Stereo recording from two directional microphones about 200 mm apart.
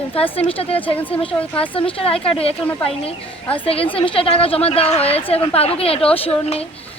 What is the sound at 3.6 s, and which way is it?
A woman's voice, 30° left (ahead or behind).